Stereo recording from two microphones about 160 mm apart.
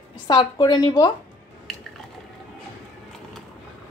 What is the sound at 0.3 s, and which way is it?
Speech, 25° left (ahead or behind).